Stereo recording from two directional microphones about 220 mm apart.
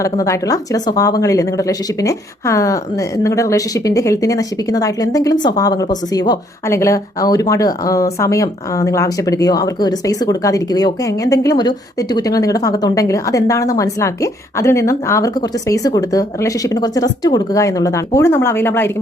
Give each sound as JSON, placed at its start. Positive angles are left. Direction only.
{"t": 0.0, "sound": "speech", "side_deg": 15}